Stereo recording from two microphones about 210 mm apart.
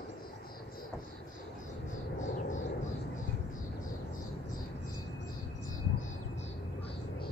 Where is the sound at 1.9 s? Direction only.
35° left (ahead or behind).